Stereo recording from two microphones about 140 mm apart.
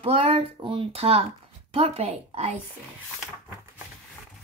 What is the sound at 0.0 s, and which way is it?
Speech, 45° right (ahead or behind).